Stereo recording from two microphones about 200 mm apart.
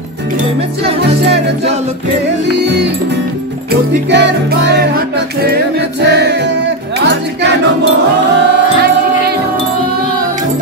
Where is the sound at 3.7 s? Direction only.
55° right (ahead or behind).